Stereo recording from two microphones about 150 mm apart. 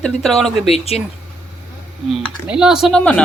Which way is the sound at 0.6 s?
45° left (ahead or behind).